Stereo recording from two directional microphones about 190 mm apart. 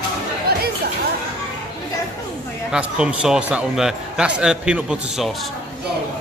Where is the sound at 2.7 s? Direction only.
5° right (ahead or behind).